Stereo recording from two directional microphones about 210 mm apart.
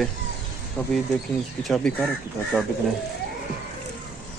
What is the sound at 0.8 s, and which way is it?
Speech, 5° left (ahead or behind).